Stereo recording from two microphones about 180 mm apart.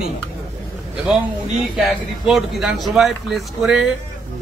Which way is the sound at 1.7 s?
Centre (ahead or behind).